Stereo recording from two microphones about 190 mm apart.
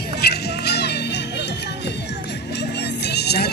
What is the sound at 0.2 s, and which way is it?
Music, 60° left (ahead or behind).